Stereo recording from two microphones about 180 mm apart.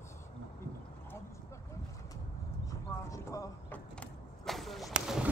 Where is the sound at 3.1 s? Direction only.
15° left (ahead or behind).